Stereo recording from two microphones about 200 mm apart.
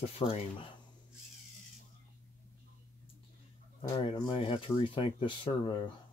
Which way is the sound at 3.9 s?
25° left (ahead or behind).